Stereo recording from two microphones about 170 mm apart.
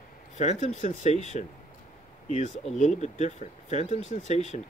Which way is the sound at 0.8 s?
45° left (ahead or behind).